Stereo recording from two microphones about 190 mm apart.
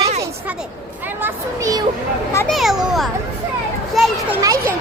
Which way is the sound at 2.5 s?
Centre (ahead or behind).